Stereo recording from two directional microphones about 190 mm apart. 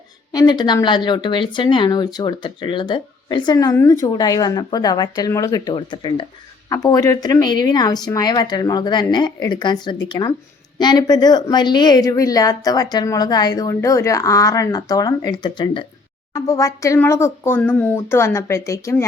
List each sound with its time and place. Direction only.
0.3 s speech: 20° left (ahead or behind)